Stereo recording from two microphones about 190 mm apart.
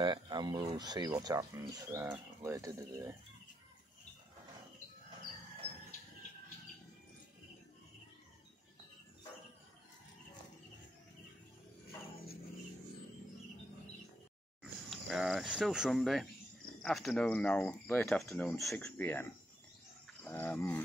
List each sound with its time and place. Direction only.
0.0 s speech: 25° right (ahead or behind)
14.6 s a sound: centre (ahead or behind)
16.8 s speech: centre (ahead or behind)
20.2 s cricket: 10° left (ahead or behind)